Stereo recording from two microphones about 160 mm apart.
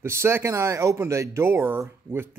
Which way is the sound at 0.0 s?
15° right (ahead or behind).